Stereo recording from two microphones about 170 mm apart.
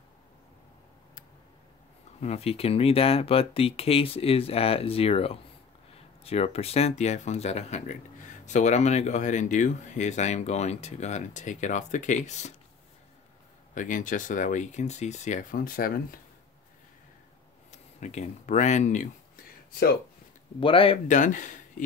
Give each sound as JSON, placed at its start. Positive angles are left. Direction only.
{"t": 2.1, "sound": "speech", "side_deg": 40}
{"t": 13.7, "sound": "speech", "side_deg": 50}
{"t": 17.6, "sound": "a sound", "side_deg": 45}
{"t": 20.6, "sound": "speech", "side_deg": 30}
{"t": 21.1, "sound": "speech", "side_deg": 50}